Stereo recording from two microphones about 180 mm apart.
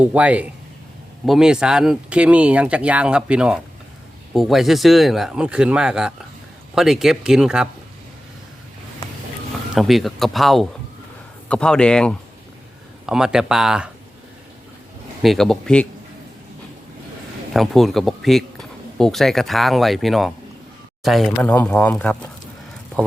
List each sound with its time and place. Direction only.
0.0 s speech: 5° right (ahead or behind)
9.7 s speech: centre (ahead or behind)
15.2 s speech: centre (ahead or behind)
17.5 s speech: centre (ahead or behind)